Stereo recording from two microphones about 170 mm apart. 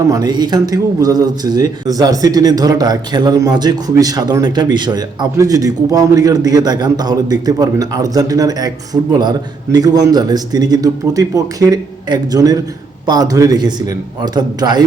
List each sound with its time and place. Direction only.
0.1 s speech: 25° right (ahead or behind)